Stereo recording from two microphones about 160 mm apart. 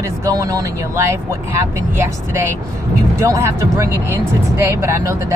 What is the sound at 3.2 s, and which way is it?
Speech, 20° right (ahead or behind).